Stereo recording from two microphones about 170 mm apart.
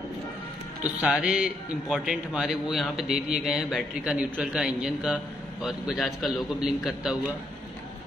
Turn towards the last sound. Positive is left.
turn(degrees=-5)  # may be behind; listen again after turning